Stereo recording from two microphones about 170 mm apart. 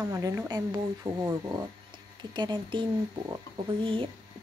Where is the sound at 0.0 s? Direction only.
15° right (ahead or behind).